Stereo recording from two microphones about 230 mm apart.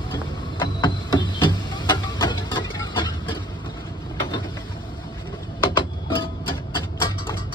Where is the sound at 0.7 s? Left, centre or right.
Centre.